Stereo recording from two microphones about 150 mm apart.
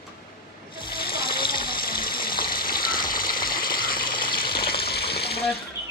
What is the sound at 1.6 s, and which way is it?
Water, 80° left.